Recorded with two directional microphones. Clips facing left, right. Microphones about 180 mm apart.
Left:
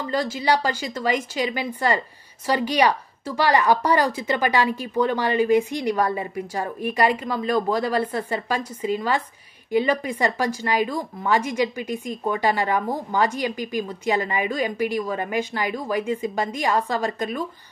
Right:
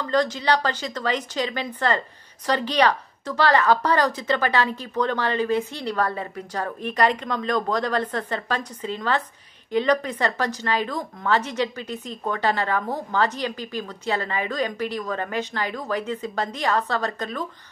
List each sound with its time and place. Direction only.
0.0 s speech: 10° left (ahead or behind)